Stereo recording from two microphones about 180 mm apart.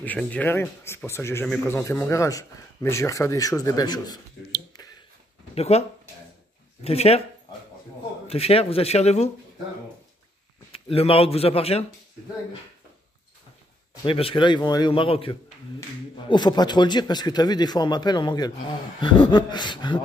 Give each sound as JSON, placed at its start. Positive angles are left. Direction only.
{"t": 0.0, "sound": "a man's voice", "side_deg": 10}
{"t": 5.5, "sound": "speech", "side_deg": 35}
{"t": 8.3, "sound": "speech", "side_deg": 35}
{"t": 10.7, "sound": "speech", "side_deg": 30}
{"t": 14.0, "sound": "speech", "side_deg": 30}